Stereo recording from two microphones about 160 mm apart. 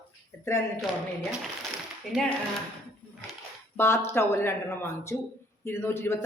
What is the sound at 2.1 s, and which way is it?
Speech, centre (ahead or behind).